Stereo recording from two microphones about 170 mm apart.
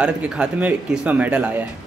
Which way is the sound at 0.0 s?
5° right (ahead or behind).